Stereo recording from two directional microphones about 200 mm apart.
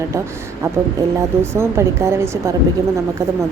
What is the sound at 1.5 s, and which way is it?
Speech, 15° right (ahead or behind).